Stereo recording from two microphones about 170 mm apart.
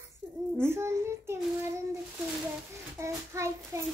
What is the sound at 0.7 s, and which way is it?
Speech, 15° right (ahead or behind).